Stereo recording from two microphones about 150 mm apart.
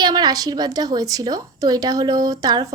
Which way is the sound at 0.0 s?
30° right (ahead or behind).